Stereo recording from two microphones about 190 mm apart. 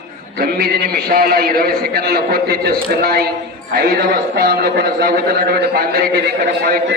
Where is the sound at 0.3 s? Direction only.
55° right (ahead or behind).